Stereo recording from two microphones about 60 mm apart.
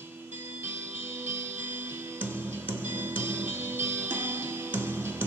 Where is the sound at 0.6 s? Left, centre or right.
Right.